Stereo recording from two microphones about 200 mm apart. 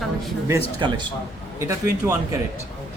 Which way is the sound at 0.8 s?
20° right (ahead or behind).